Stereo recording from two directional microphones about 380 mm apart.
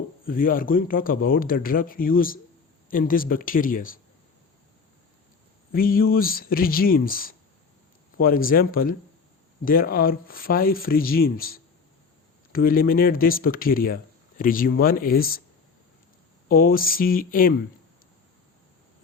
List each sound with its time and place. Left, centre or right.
0.3 s speech: left
5.7 s speech: left
16.5 s speech: left